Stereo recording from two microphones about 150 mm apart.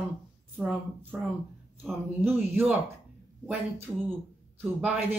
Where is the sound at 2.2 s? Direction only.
15° right (ahead or behind).